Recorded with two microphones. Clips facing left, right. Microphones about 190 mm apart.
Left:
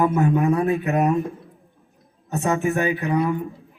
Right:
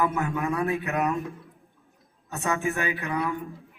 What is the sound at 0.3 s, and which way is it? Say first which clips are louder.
Speech: left 7 dB; 35° left (ahead or behind).